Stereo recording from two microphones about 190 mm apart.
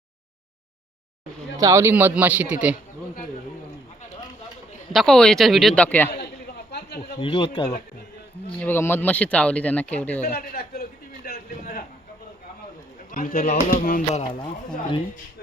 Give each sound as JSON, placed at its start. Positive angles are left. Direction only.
{"t": 1.5, "sound": "speech", "side_deg": -15}
{"t": 4.9, "sound": "speech", "side_deg": 0}
{"t": 6.7, "sound": "a sound", "side_deg": 60}
{"t": 7.2, "sound": "speech", "side_deg": 30}
{"t": 8.5, "sound": "speech", "side_deg": 10}
{"t": 10.2, "sound": "a man's voice", "side_deg": 55}
{"t": 13.1, "sound": "speech", "side_deg": 50}
{"t": 13.5, "sound": "music", "side_deg": 45}